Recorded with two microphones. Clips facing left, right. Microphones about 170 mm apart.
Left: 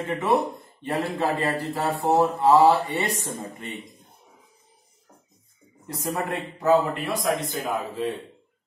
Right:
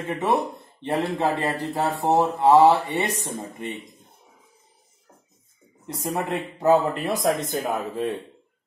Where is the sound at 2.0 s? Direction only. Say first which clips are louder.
Right 1 dB; 20° right (ahead or behind).